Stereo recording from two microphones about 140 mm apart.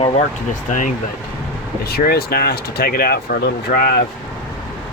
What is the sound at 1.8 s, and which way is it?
Speech, 90° left.